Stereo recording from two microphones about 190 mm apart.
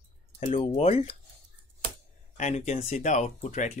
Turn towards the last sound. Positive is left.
turn(degrees=40)  # may be behind; listen again after turning